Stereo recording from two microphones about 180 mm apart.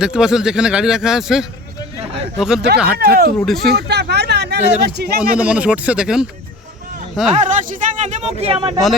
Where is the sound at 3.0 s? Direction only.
60° right (ahead or behind).